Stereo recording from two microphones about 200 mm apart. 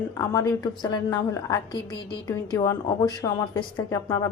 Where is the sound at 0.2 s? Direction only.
20° left (ahead or behind).